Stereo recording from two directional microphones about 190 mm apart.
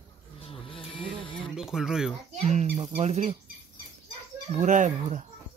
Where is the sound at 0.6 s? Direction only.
30° left (ahead or behind).